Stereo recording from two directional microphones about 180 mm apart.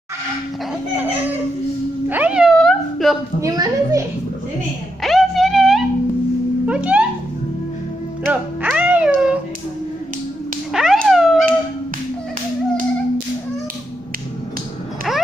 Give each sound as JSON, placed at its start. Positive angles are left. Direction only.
{"t": 2.0, "sound": "cat", "side_deg": -10}
{"t": 3.3, "sound": "a woman's voice", "side_deg": -20}
{"t": 5.0, "sound": "music", "side_deg": 0}
{"t": 8.3, "sound": "music", "side_deg": -10}
{"t": 10.7, "sound": "a sound", "side_deg": 0}
{"t": 15.1, "sound": "a sound", "side_deg": 0}